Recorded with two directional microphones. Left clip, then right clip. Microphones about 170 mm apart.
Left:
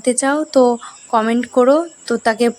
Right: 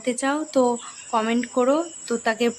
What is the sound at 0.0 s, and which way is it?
Speech, 35° left (ahead or behind).